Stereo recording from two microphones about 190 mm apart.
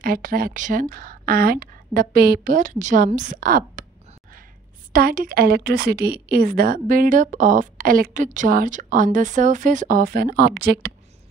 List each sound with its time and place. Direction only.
0.0 s a woman's voice: 50° right (ahead or behind)
4.9 s a woman's voice: 50° right (ahead or behind)